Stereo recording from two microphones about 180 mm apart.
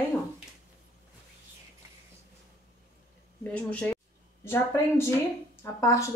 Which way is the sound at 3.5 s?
5° left (ahead or behind).